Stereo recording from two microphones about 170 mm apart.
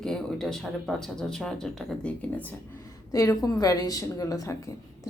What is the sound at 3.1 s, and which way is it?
A woman's voice, 20° left (ahead or behind).